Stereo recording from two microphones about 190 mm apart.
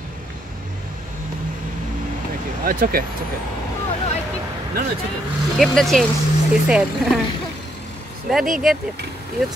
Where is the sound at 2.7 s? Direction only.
50° right (ahead or behind).